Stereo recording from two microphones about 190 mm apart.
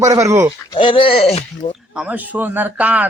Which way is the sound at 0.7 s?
25° left (ahead or behind).